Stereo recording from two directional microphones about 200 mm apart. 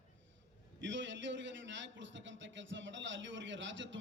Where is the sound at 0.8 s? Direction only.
65° right (ahead or behind).